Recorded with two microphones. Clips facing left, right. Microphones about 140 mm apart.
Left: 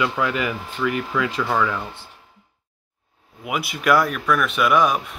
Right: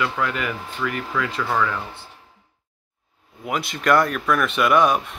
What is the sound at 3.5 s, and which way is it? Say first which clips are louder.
Speech: even; 5° left (ahead or behind).